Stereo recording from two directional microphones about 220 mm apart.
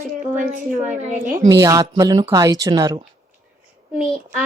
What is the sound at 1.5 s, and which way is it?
A woman's voice, 15° right (ahead or behind).